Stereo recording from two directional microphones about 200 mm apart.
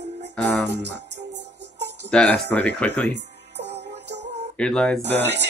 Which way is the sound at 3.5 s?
60° right (ahead or behind).